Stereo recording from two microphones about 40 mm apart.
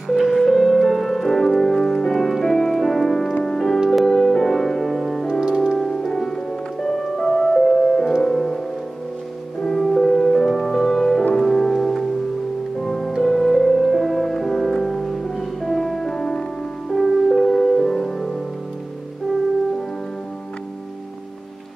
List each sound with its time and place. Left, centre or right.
0.1 s music: centre
16.9 s music: centre